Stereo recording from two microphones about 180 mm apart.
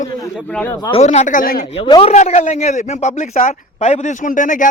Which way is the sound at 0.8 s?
30° left (ahead or behind).